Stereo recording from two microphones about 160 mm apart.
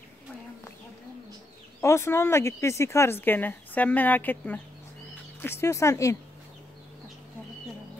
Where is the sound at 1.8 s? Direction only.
15° left (ahead or behind).